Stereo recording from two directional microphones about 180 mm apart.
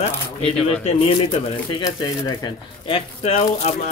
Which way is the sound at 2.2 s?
25° left (ahead or behind).